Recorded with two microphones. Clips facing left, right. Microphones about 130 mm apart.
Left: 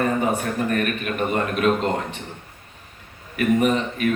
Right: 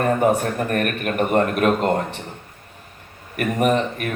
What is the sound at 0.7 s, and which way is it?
Speech, 50° right (ahead or behind).